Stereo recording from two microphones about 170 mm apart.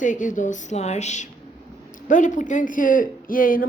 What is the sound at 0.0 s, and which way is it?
A woman's voice, 50° left (ahead or behind).